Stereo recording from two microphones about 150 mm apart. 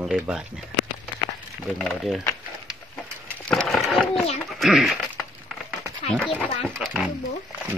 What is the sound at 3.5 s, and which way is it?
Wood, 5° left (ahead or behind).